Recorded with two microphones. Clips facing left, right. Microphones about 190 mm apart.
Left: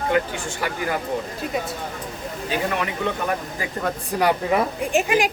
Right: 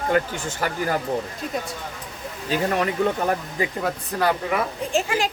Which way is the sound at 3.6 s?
20° right (ahead or behind).